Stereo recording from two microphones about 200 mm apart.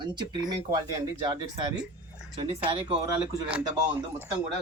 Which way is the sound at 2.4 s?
25° right (ahead or behind).